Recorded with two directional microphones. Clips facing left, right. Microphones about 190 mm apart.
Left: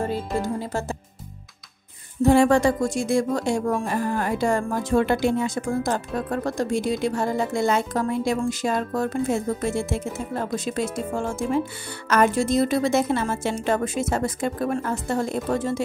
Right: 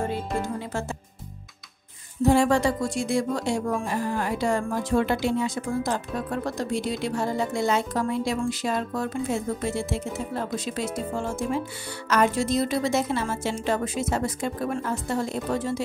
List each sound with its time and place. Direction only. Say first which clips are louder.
0.4 s music: left 3 dB; 35° left (ahead or behind)
2.2 s speech: left 3 dB; 55° left (ahead or behind)